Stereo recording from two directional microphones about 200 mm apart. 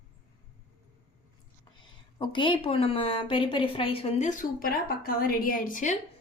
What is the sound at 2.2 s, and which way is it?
A woman's voice, 25° left (ahead or behind).